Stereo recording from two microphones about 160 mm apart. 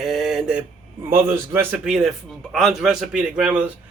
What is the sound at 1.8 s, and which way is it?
A man's voice, 5° right (ahead or behind).